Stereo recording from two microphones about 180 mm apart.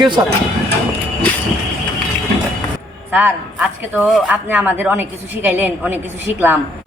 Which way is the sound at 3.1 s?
10° right (ahead or behind).